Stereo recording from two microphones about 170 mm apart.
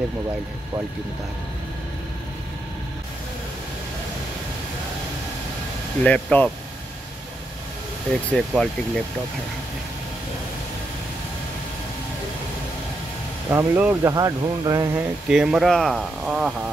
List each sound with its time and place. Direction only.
6.0 s speech: 10° left (ahead or behind)
8.3 s speech: 5° left (ahead or behind)
13.5 s speech: 10° right (ahead or behind)
15.0 s speech: 5° right (ahead or behind)